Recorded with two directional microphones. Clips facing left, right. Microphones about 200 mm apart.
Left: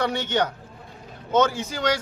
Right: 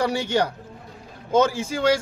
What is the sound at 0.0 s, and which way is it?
A man's voice, 30° right (ahead or behind).